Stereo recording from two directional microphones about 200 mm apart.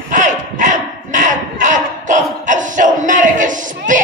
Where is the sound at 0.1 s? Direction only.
40° right (ahead or behind).